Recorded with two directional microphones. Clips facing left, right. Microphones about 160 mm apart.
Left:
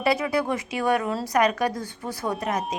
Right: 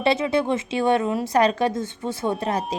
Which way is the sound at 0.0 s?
25° right (ahead or behind).